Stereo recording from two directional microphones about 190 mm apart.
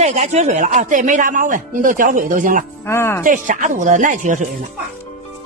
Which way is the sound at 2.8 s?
10° left (ahead or behind).